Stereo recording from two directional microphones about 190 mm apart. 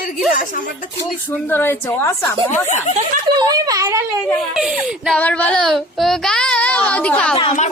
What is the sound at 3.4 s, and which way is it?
Speech, 20° right (ahead or behind).